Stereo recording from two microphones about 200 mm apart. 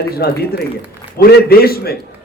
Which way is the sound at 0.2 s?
50° left (ahead or behind).